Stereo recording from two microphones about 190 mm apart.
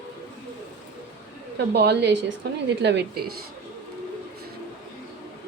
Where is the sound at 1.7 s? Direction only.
65° right (ahead or behind).